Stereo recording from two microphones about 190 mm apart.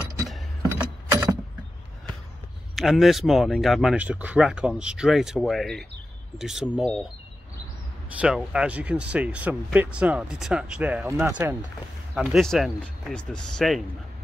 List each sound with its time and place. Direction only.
0.6 s keys jangling: 15° right (ahead or behind)
2.7 s speech: centre (ahead or behind)
8.4 s speech: 5° right (ahead or behind)